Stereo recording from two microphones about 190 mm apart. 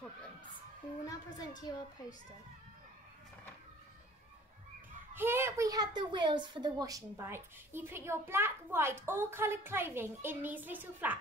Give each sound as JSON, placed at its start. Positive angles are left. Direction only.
{"t": 1.0, "sound": "a child's voice", "side_deg": 20}
{"t": 5.1, "sound": "a woman's voice", "side_deg": -10}